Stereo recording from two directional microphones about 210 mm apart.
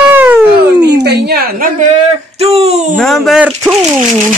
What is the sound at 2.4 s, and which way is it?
Speech, 30° right (ahead or behind).